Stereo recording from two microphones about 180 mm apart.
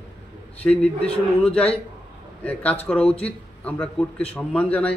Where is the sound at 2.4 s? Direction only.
10° left (ahead or behind).